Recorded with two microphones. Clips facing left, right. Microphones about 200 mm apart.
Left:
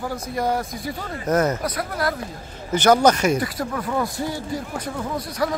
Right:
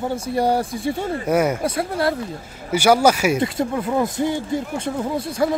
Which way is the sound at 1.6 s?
25° right (ahead or behind).